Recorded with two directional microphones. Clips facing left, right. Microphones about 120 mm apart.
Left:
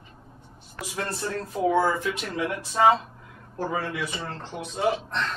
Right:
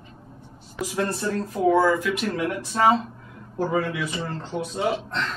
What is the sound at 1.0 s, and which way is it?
Speech, 10° right (ahead or behind).